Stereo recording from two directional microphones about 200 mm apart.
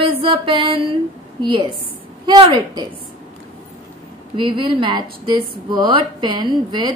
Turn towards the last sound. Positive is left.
turn(degrees=-20)  # may be behind; listen again after turning